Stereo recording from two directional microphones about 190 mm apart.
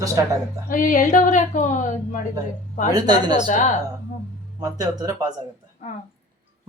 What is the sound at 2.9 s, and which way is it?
Speech, 20° right (ahead or behind).